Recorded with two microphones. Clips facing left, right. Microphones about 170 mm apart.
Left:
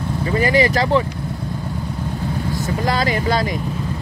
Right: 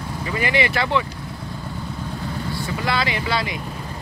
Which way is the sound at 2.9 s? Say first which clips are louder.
Left 4 dB; 45° left (ahead or behind).